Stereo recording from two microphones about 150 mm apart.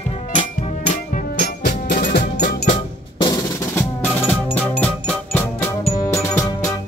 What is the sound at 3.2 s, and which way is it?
Drum, 20° left (ahead or behind).